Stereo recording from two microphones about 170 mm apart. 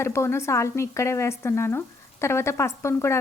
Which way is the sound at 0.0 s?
15° left (ahead or behind).